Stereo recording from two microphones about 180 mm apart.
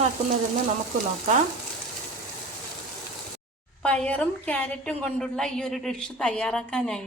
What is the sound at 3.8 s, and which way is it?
Frying, 5° left (ahead or behind).